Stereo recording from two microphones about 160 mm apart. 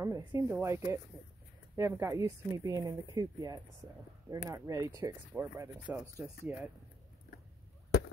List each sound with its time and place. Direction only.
0.0 s speech: 20° right (ahead or behind)